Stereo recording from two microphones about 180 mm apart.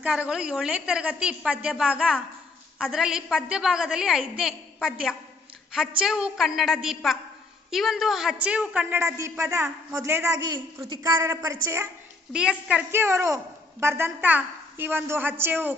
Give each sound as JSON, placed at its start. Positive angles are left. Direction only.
{"t": 0.0, "sound": "a woman's voice", "side_deg": -5}
{"t": 10.5, "sound": "a man's voice", "side_deg": -25}
{"t": 12.3, "sound": "a woman's voice", "side_deg": -5}